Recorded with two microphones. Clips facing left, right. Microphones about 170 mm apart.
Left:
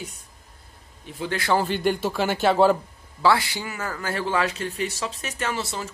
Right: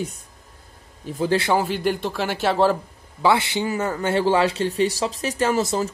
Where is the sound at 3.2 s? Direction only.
20° right (ahead or behind).